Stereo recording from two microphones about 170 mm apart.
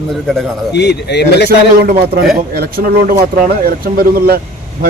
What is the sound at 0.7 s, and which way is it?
Speech, 80° left.